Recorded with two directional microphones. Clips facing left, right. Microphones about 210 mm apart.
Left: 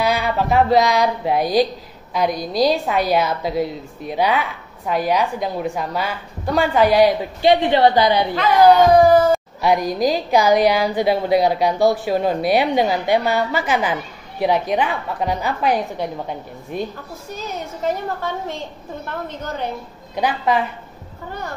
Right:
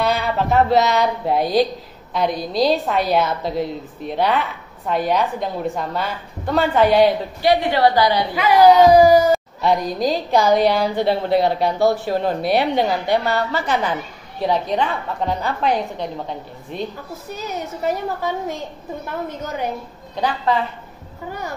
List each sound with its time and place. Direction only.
0.0 s a sound: 5° left (ahead or behind)
0.7 s a woman's voice: 10° left (ahead or behind)
7.4 s a woman's voice: 20° left (ahead or behind)
9.0 s a woman's voice: 15° right (ahead or behind)
9.3 s speech: 10° left (ahead or behind)
17.4 s a woman's voice: 10° right (ahead or behind)
20.2 s speech: 15° left (ahead or behind)